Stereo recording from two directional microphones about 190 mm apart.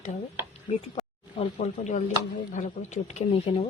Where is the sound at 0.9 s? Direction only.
35° left (ahead or behind).